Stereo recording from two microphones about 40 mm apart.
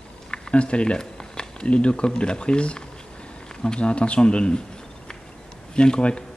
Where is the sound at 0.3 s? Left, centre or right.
Left.